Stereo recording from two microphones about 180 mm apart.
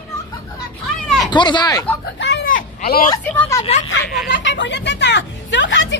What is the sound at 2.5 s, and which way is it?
Vehicle, 50° left (ahead or behind).